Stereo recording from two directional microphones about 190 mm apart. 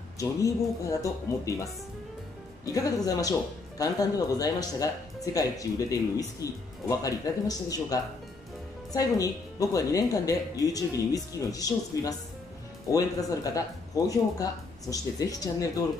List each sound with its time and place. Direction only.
0.2 s speech: 15° left (ahead or behind)